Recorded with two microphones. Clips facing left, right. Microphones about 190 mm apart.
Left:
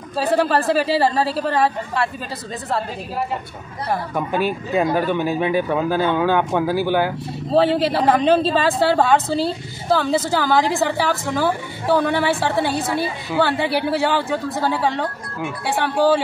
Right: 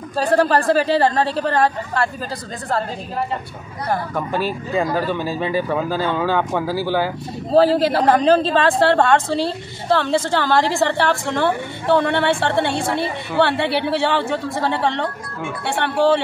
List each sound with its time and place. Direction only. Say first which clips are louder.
0.1 s speech: right 2 dB; 5° left (ahead or behind)
3.9 s speech: even; 10° left (ahead or behind)
4.8 s speech: left 2 dB; 20° left (ahead or behind)
5.7 s speech: left 2 dB; 10° left (ahead or behind)
7.1 s speech: right 1 dB; centre (ahead or behind)